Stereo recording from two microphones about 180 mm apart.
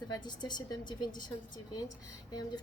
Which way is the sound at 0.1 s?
25° left (ahead or behind).